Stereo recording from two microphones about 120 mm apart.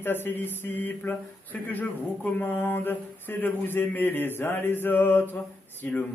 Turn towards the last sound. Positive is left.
turn(degrees=15)  # may be behind; listen again after turning